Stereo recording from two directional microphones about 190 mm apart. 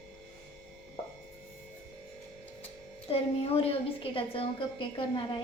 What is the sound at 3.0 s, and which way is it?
A woman's voice, 30° left (ahead or behind).